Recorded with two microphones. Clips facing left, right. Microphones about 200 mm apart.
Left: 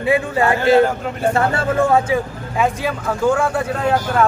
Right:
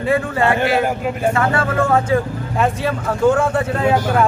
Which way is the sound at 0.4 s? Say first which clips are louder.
Right 1 dB; 25° right (ahead or behind).